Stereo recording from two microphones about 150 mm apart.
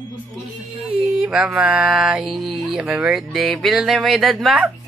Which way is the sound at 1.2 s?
5° right (ahead or behind).